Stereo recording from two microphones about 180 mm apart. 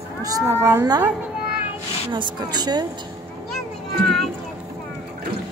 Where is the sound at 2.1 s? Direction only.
25° right (ahead or behind).